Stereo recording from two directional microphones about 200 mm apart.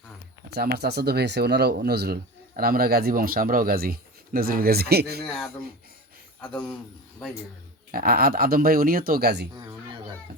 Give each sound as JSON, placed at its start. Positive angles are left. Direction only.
{"t": 0.5, "sound": "speech", "side_deg": -50}
{"t": 6.4, "sound": "a man's voice", "side_deg": 5}
{"t": 7.9, "sound": "speech", "side_deg": -50}
{"t": 9.6, "sound": "a sound", "side_deg": -20}